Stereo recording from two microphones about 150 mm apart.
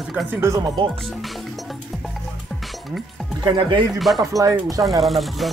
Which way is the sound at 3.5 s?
30° right (ahead or behind).